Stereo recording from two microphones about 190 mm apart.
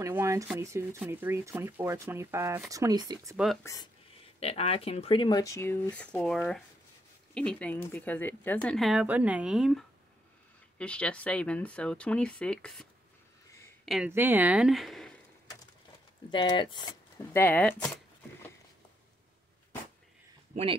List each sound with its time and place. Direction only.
0.0 s shuffling cards: 15° right (ahead or behind)
0.6 s speech: 15° right (ahead or behind)
3.6 s speech: 20° left (ahead or behind)
4.4 s speech: 30° left (ahead or behind); by 12.8 s 5° left (ahead or behind)
13.8 s speech: 5° right (ahead or behind)
16.3 s speech: 25° left (ahead or behind)
17.3 s speech: 10° left (ahead or behind)